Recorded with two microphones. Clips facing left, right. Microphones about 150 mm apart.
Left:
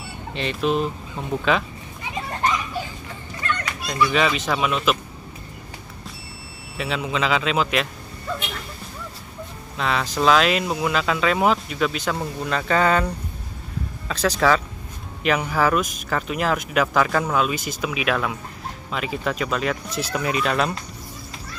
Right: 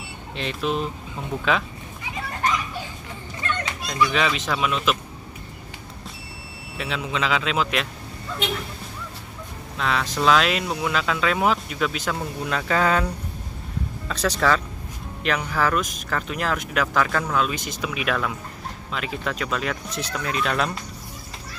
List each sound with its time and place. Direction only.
0.3 s speech: centre (ahead or behind)
3.4 s dog: 25° right (ahead or behind)
3.8 s speech: centre (ahead or behind)
6.8 s speech: centre (ahead or behind)
9.8 s speech: centre (ahead or behind)